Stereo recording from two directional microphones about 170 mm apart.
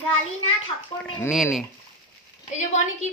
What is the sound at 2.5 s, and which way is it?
Speech, 45° left (ahead or behind).